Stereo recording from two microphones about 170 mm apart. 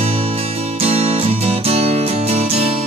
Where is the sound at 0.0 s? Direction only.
35° right (ahead or behind).